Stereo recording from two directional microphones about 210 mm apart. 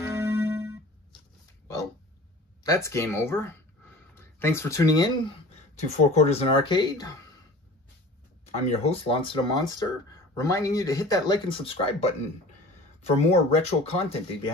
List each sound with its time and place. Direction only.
0.0 s music: 10° right (ahead or behind)
2.6 s speech: 15° left (ahead or behind)
5.8 s speech: 30° left (ahead or behind)
8.6 s speech: 25° left (ahead or behind)
13.1 s speech: 30° left (ahead or behind)